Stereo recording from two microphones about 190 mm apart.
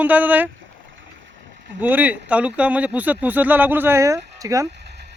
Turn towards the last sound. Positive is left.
turn(degrees=-15)  # may be behind; listen again after turning